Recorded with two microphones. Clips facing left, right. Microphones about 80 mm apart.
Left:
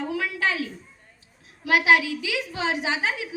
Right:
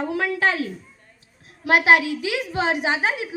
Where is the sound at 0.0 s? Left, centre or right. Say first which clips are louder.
Right 4 dB; right.